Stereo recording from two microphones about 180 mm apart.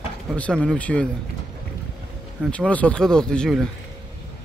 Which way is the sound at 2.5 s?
5° left (ahead or behind).